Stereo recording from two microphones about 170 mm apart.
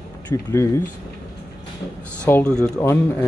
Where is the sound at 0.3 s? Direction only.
15° left (ahead or behind).